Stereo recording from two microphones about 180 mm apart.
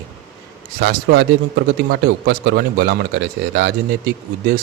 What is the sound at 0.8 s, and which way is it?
A man's voice, 65° right (ahead or behind).